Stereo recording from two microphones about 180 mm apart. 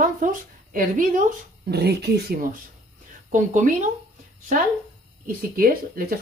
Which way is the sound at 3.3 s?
45° right (ahead or behind).